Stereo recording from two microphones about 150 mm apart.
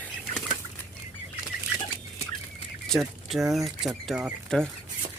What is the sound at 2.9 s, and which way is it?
Speech, centre (ahead or behind).